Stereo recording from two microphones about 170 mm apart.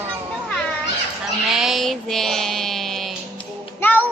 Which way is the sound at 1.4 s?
Centre (ahead or behind).